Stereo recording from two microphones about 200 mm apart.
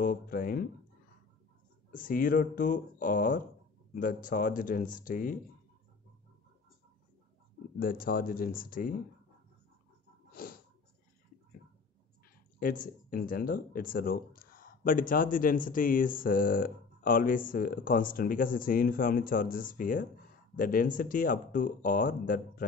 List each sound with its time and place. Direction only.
0.0 s speech: 45° left (ahead or behind)
1.9 s speech: 45° left (ahead or behind)
7.8 s speech: 45° left (ahead or behind)
10.3 s snort: 45° left (ahead or behind)
12.5 s speech: 45° left (ahead or behind)